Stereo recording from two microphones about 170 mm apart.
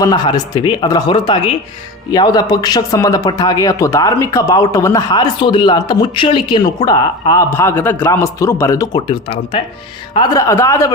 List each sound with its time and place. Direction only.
0.0 s speech: 25° left (ahead or behind)
7.5 s speech: 15° left (ahead or behind)